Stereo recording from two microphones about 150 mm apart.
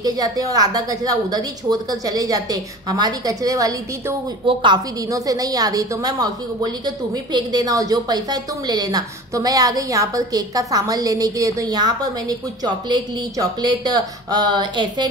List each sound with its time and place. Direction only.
0.0 s a woman's voice: 25° right (ahead or behind)
4.5 s a woman's voice: 35° right (ahead or behind)
5.1 s a woman's voice: 25° right (ahead or behind)